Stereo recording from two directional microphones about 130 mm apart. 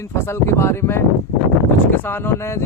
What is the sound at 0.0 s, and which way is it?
Speech, 20° left (ahead or behind).